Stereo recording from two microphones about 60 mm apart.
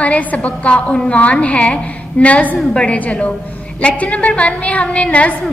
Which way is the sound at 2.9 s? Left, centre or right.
Left.